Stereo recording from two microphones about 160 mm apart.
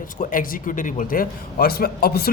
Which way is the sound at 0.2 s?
60° left (ahead or behind).